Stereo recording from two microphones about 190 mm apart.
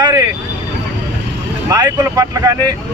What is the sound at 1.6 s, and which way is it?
Speech, 20° right (ahead or behind).